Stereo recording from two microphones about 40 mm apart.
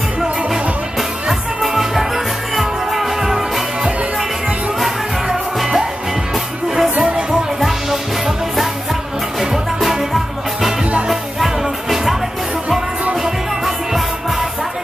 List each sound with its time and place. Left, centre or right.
0.2 s music: centre
4.7 s music: centre
7.0 s music: right
9.4 s music: centre